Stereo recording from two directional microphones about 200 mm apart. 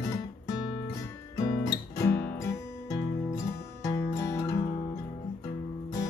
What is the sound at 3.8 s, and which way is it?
Music, 15° left (ahead or behind).